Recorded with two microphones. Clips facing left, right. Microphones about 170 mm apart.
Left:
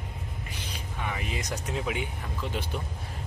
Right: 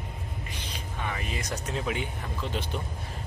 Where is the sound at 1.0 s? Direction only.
15° left (ahead or behind).